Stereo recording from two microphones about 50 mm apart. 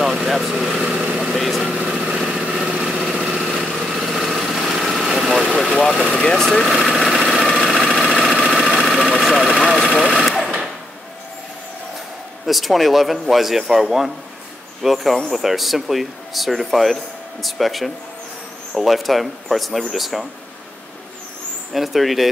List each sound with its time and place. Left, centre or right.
0.0 s vehicle: centre
1.6 s vehicle: right
1.9 s vehicle: centre
6.1 s speech: centre
7.0 s engine: centre
9.2 s vehicle: centre
10.0 s sewing machine: centre
12.4 s speech: centre
21.7 s speech: centre